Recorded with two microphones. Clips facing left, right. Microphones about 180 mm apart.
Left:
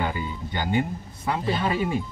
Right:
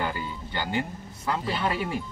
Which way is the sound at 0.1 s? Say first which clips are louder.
Left 2 dB; 15° left (ahead or behind).